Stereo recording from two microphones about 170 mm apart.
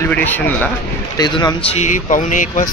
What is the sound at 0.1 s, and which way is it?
Speech, 10° left (ahead or behind).